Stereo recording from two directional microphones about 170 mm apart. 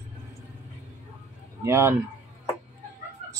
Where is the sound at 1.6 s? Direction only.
15° right (ahead or behind).